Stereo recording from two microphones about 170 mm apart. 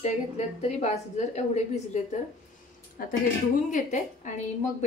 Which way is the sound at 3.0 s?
55° left (ahead or behind).